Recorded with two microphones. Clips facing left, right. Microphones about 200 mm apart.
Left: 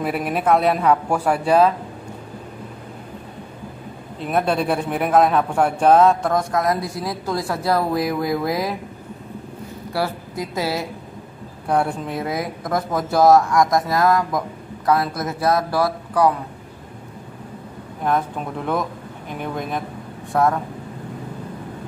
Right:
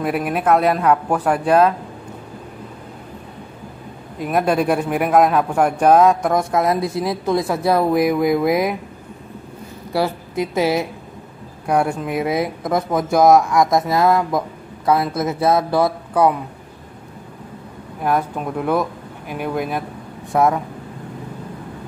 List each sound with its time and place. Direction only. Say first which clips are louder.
0.0 s speech: right 2 dB; centre (ahead or behind)
4.2 s a man's voice: right 3 dB; 10° right (ahead or behind)
6.5 s speech: right 3 dB; 25° right (ahead or behind)
9.9 s a woman's voice: right 4 dB; 20° right (ahead or behind)
11.9 s speech: right 4 dB; 10° right (ahead or behind)
18.7 s speech: right 3 dB; 5° right (ahead or behind)
20.3 s a man's voice: right 2 dB; 15° right (ahead or behind)